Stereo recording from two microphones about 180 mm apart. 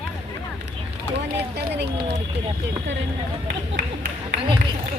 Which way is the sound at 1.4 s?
70° right (ahead or behind).